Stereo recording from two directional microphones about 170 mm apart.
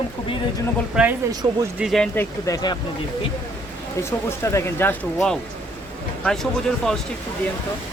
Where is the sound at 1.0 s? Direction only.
5° right (ahead or behind).